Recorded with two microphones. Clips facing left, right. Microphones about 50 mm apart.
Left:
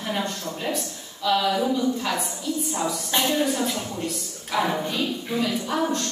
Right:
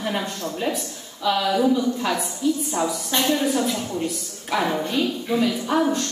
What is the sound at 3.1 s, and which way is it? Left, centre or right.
Speech, centre.